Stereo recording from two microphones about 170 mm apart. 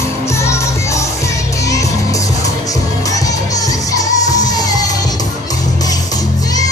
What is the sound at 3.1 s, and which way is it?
Music, 20° left (ahead or behind).